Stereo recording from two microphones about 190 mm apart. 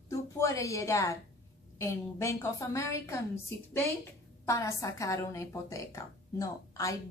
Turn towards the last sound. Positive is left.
turn(degrees=15)  # may be behind; listen again after turning